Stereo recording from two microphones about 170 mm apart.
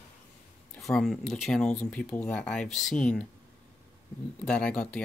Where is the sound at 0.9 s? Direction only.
Centre (ahead or behind).